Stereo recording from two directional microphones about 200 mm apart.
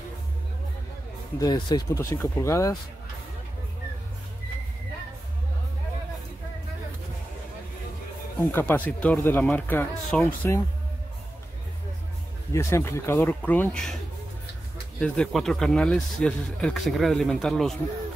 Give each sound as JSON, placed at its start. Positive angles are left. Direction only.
{"t": 1.4, "sound": "speech", "side_deg": 20}
{"t": 8.4, "sound": "speech", "side_deg": 10}
{"t": 12.5, "sound": "speech", "side_deg": 15}
{"t": 15.0, "sound": "speech", "side_deg": 5}